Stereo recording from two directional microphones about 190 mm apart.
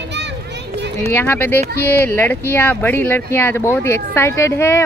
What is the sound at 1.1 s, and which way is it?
Speech, 10° left (ahead or behind).